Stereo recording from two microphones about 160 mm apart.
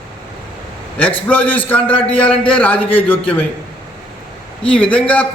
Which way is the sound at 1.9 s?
35° left (ahead or behind).